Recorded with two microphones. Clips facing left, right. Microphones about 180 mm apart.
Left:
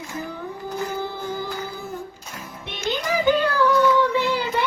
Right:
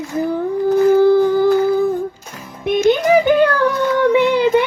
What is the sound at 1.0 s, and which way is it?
Howl, 80° right.